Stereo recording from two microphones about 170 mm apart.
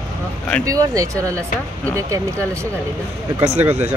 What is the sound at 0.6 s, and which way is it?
Speech, 20° right (ahead or behind).